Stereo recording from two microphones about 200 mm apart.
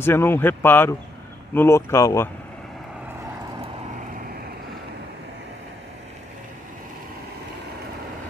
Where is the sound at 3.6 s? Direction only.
40° right (ahead or behind).